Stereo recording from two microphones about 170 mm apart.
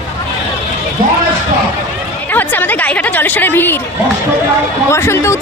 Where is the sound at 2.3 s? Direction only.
10° left (ahead or behind).